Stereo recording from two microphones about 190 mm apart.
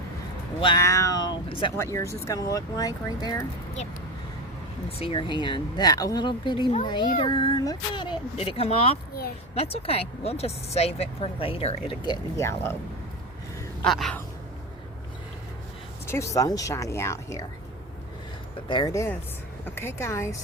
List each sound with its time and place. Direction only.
0.8 s cat: 15° left (ahead or behind)
1.8 s speech: 15° left (ahead or behind)
4.9 s speech: 30° left (ahead or behind); by 12.7 s 15° left (ahead or behind)
13.8 s speech: centre (ahead or behind)
16.0 s speech: 15° left (ahead or behind)
18.7 s speech: 20° left (ahead or behind)